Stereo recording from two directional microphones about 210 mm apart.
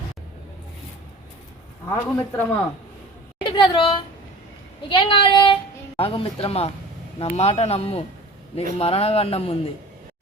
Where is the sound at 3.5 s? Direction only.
20° left (ahead or behind).